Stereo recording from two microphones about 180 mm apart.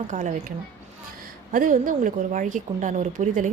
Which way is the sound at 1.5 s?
50° right (ahead or behind).